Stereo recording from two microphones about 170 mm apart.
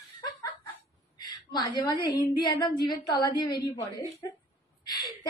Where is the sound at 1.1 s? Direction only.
25° left (ahead or behind).